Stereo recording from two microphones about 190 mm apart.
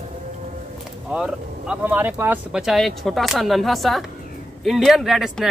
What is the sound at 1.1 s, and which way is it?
Speech, 5° right (ahead or behind).